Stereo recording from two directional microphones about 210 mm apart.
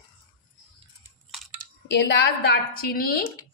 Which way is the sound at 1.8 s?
55° left (ahead or behind).